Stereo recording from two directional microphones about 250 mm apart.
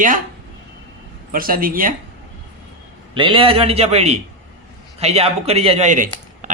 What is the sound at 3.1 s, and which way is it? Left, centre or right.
Speech, right.